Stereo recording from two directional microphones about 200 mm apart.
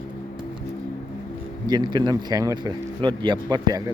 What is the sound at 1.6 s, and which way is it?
Speech, 20° right (ahead or behind).